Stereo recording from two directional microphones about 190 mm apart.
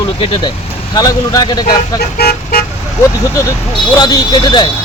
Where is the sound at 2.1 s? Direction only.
55° left (ahead or behind).